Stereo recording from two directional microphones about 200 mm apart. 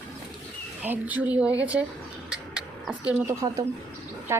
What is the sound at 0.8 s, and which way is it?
A woman's voice, 10° right (ahead or behind).